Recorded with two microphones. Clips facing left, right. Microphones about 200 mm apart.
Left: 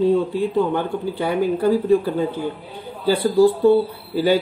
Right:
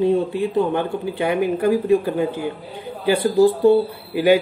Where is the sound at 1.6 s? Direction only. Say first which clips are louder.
Even; 10° right (ahead or behind).